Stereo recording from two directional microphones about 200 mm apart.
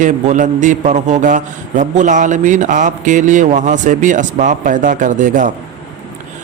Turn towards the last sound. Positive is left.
turn(degrees=-40)  # may be behind; listen again after turning